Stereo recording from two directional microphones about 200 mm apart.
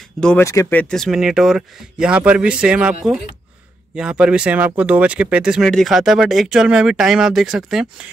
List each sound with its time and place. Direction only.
0.2 s speech: 10° left (ahead or behind)